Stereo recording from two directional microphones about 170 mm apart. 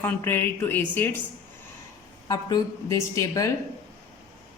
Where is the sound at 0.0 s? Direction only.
10° left (ahead or behind).